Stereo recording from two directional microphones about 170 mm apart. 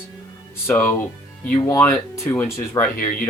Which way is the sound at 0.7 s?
10° left (ahead or behind).